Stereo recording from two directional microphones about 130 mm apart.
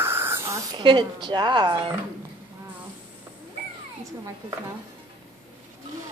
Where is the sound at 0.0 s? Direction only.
20° right (ahead or behind); by 1.8 s 35° right (ahead or behind).